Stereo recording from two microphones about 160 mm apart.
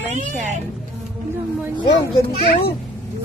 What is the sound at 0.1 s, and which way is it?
Speech, 55° right (ahead or behind).